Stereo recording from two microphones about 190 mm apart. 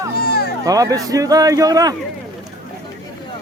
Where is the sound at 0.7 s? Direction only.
20° right (ahead or behind).